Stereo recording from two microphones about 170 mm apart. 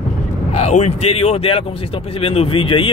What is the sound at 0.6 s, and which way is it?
Speech, 40° left (ahead or behind).